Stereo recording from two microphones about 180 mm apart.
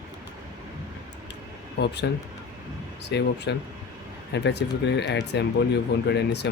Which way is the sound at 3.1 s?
70° left (ahead or behind).